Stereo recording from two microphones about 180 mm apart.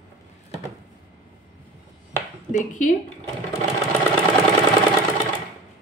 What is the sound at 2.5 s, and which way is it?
Speech, 45° left (ahead or behind).